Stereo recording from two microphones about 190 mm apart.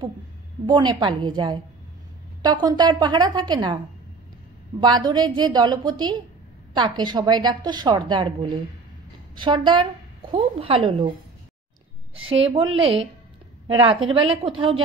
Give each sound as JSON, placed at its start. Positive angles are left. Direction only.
{"t": 0.7, "sound": "a woman's voice", "side_deg": -20}
{"t": 12.3, "sound": "a woman's voice", "side_deg": -30}
{"t": 13.7, "sound": "a woman's voice", "side_deg": -30}